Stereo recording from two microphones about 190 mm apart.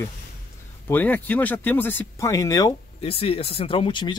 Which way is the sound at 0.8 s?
10° left (ahead or behind).